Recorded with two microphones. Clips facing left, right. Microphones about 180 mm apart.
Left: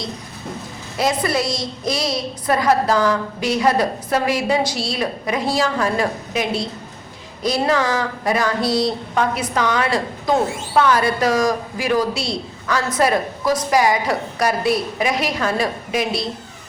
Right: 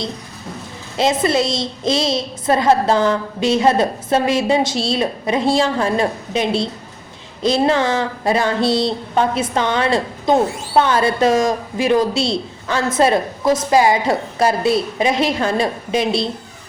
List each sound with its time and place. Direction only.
0.9 s speech: 25° right (ahead or behind)